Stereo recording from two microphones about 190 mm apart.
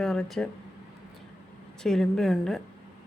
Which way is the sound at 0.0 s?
Centre (ahead or behind).